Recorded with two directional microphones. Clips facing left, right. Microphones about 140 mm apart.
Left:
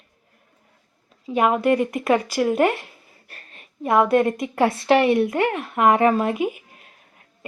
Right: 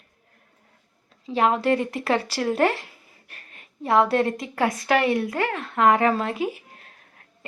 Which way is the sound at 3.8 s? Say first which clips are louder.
Left 2 dB; 20° left (ahead or behind).